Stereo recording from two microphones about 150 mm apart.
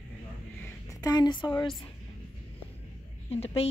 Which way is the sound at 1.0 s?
25° left (ahead or behind).